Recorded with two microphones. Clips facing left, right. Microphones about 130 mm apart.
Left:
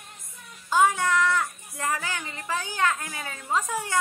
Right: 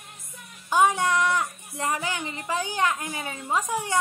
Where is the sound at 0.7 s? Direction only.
20° right (ahead or behind).